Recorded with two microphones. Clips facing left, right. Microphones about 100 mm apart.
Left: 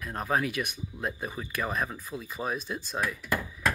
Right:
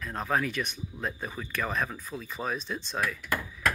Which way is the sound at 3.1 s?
25° left (ahead or behind).